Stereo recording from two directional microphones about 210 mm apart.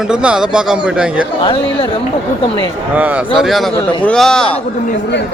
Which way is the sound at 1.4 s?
25° left (ahead or behind).